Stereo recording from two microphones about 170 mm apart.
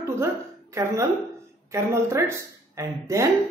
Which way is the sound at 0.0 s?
15° right (ahead or behind).